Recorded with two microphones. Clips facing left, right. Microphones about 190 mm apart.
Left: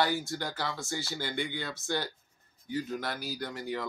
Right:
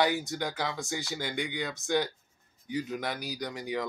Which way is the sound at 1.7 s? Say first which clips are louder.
Right 5 dB; 15° right (ahead or behind).